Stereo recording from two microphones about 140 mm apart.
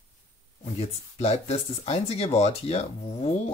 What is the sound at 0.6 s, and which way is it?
Speech, 50° left (ahead or behind).